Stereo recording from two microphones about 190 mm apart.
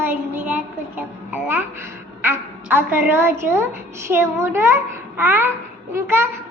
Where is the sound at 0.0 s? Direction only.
10° right (ahead or behind).